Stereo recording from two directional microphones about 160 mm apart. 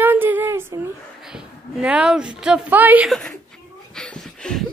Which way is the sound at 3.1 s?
5° left (ahead or behind).